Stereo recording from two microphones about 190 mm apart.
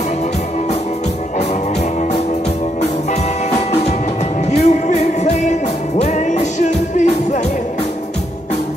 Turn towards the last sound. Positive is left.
turn(degrees=35)  # may be behind; listen again after turning